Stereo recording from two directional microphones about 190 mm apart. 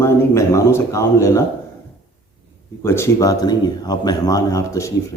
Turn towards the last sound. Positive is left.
turn(degrees=15)  # may be behind; listen again after turning